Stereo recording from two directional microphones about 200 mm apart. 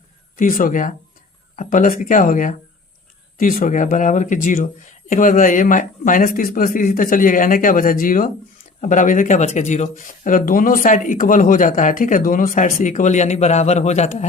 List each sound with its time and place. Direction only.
0.3 s speech: 40° left (ahead or behind)